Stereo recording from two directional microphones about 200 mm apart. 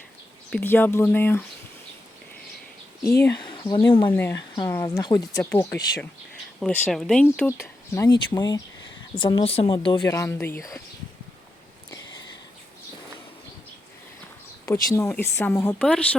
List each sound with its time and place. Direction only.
0.5 s speech: 10° left (ahead or behind)
3.4 s speech: 20° left (ahead or behind)
4.1 s speech: 10° left (ahead or behind)
14.7 s speech: 15° left (ahead or behind)